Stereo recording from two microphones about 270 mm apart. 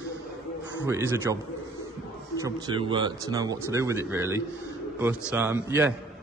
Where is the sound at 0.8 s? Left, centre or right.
Centre.